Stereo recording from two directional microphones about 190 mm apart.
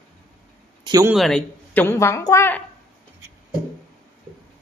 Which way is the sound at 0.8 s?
20° right (ahead or behind).